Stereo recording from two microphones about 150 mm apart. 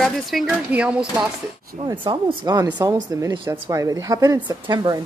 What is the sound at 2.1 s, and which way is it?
Speech, 30° right (ahead or behind).